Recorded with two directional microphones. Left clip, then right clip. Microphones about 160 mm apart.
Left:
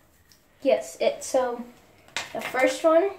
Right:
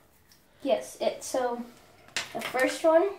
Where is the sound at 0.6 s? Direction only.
25° left (ahead or behind).